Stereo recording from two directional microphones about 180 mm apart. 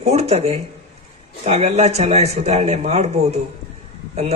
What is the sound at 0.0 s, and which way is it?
A man's voice, 35° right (ahead or behind).